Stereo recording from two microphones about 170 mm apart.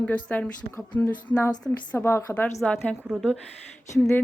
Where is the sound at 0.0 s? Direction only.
5° left (ahead or behind).